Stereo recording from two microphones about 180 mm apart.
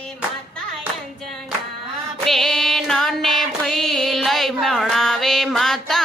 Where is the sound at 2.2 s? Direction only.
Centre (ahead or behind).